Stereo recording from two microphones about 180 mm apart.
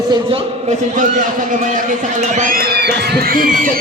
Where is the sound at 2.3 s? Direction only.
50° right (ahead or behind).